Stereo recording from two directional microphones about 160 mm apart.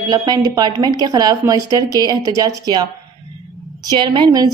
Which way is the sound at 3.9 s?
30° right (ahead or behind).